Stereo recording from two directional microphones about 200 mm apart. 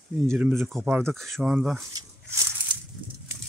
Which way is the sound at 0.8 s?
10° right (ahead or behind).